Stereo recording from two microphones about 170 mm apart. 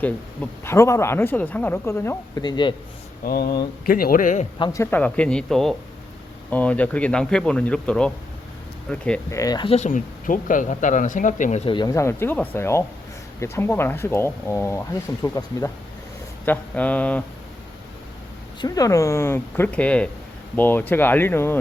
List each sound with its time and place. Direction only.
0.6 s speech: 15° left (ahead or behind)
3.2 s speech: 65° left (ahead or behind)
4.5 s speech: 20° left (ahead or behind)
9.3 s speech: 20° left (ahead or behind)
9.6 s speech: 40° left (ahead or behind)
11.6 s speech: 25° left (ahead or behind); by 17.2 s 10° left (ahead or behind)
18.6 s speech: 20° left (ahead or behind)